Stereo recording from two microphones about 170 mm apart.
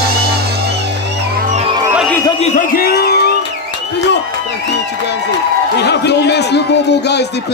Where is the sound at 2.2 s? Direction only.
35° left (ahead or behind); by 3.3 s 70° left (ahead or behind).